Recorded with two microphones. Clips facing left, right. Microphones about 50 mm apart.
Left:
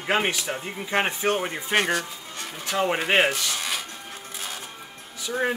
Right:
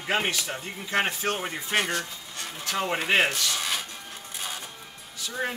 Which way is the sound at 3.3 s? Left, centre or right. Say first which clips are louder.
Left 1 dB; centre.